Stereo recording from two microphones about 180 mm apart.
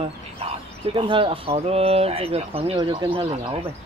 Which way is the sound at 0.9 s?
30° right (ahead or behind).